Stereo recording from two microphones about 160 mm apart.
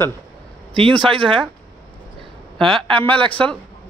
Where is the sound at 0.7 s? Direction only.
35° right (ahead or behind).